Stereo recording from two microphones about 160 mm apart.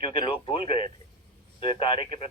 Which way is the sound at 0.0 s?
35° left (ahead or behind).